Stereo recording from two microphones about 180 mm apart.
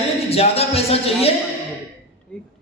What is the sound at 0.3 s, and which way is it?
Speech, 35° left (ahead or behind).